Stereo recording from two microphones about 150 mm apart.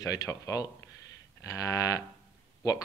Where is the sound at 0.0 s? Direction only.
25° left (ahead or behind).